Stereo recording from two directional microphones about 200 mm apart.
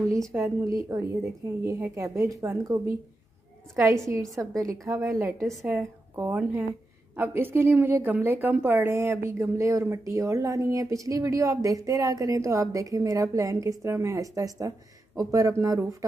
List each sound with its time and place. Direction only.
0.3 s speech: 10° right (ahead or behind)